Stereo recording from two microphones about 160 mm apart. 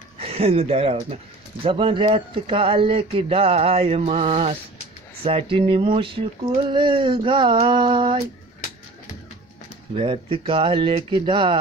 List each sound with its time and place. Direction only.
0.2 s speech: 40° right (ahead or behind)
9.9 s speech: 35° right (ahead or behind)